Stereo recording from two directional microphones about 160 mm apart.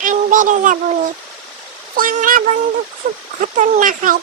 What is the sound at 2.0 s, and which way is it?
Speech, 60° right (ahead or behind).